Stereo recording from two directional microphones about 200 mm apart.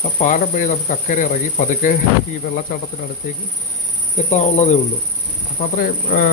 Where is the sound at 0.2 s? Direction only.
40° left (ahead or behind).